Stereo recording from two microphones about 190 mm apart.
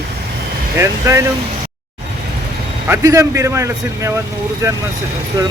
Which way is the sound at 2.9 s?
15° right (ahead or behind).